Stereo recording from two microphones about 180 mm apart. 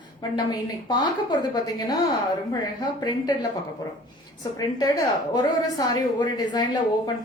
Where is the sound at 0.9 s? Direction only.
25° left (ahead or behind).